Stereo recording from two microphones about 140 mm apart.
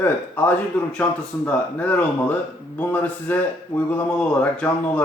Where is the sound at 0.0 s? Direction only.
15° left (ahead or behind).